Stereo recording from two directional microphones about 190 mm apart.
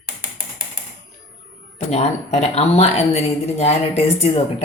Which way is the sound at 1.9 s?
35° left (ahead or behind).